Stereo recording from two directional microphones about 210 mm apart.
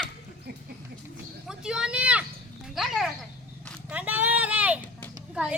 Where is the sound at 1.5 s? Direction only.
5° right (ahead or behind).